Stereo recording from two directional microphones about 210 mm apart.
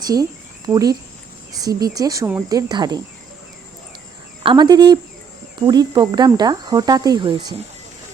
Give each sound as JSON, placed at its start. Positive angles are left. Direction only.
{"t": 0.1, "sound": "speech", "side_deg": -15}
{"t": 4.4, "sound": "cricket", "side_deg": -20}